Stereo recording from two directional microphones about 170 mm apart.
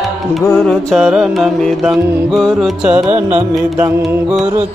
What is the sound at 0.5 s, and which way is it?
Mantra, centre (ahead or behind).